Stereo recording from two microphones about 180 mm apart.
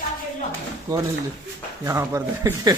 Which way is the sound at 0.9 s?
20° right (ahead or behind).